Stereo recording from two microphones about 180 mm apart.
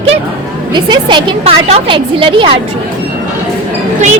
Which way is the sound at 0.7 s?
25° right (ahead or behind).